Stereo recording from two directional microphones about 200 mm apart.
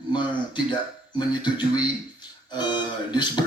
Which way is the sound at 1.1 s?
20° left (ahead or behind).